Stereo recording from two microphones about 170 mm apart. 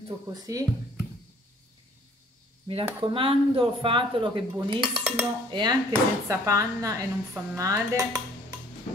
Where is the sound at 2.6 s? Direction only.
35° right (ahead or behind).